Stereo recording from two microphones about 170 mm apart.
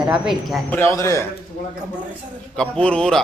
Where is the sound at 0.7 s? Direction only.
15° left (ahead or behind).